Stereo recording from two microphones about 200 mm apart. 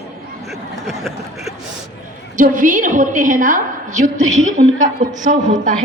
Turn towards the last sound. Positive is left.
turn(degrees=-40)  # may be behind; listen again after turning